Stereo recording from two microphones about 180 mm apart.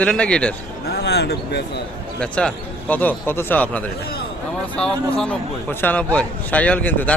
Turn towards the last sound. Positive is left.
turn(degrees=10)  # may be behind; listen again after turning